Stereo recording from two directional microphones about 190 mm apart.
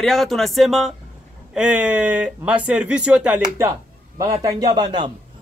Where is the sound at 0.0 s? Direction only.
Centre (ahead or behind).